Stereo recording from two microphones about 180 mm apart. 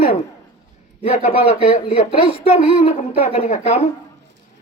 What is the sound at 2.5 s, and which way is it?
A woman's voice, 40° left (ahead or behind).